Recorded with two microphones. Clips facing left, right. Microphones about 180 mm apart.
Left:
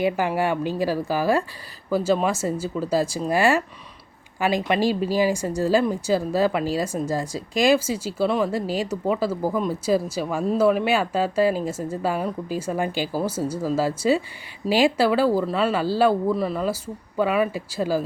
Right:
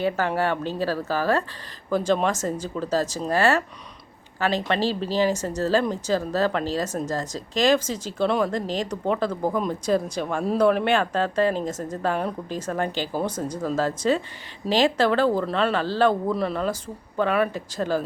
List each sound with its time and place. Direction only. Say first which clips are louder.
0.0 s a woman's voice: left 1 dB; 10° left (ahead or behind)